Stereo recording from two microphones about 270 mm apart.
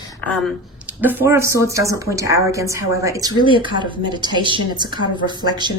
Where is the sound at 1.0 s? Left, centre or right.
Centre.